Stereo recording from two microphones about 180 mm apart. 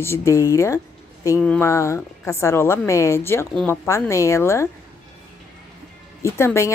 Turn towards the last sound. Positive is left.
turn(degrees=15)  # may be behind; listen again after turning